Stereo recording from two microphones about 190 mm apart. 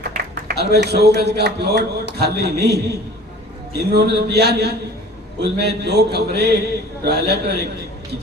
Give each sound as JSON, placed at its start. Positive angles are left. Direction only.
{"t": 0.4, "sound": "a man's voice", "side_deg": -60}